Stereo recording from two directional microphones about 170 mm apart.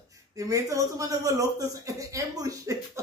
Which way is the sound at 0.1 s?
20° right (ahead or behind).